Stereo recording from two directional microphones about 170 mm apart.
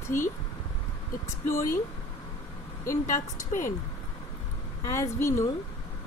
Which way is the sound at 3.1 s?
45° left (ahead or behind).